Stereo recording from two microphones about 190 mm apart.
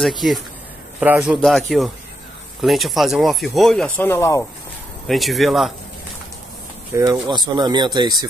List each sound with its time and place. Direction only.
0.0 s speech: centre (ahead or behind)
5.0 s speech: centre (ahead or behind)
6.9 s speech: 15° right (ahead or behind)